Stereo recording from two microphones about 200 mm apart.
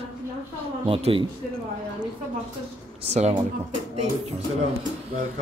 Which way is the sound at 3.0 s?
35° right (ahead or behind).